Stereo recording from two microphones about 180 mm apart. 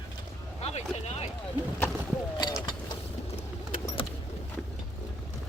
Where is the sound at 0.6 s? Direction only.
35° left (ahead or behind).